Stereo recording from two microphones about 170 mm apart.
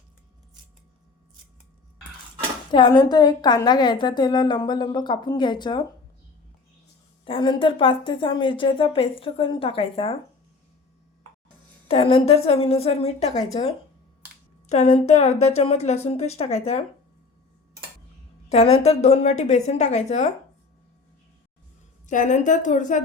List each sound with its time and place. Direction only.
2.7 s a woman's voice: 25° left (ahead or behind)
7.3 s a woman's voice: 30° left (ahead or behind)
11.9 s a woman's voice: 35° left (ahead or behind)
18.4 s a woman's voice: 35° left (ahead or behind)
22.0 s a woman's voice: 45° left (ahead or behind)